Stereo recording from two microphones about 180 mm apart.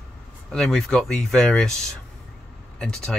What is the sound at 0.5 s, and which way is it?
Speech, centre (ahead or behind).